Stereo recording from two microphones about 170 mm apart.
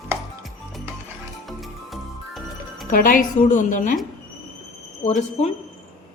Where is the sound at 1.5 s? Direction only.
Centre (ahead or behind).